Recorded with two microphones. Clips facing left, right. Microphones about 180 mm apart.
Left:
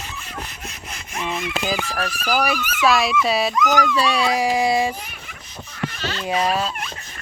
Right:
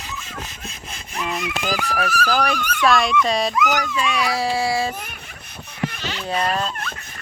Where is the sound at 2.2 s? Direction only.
10° left (ahead or behind).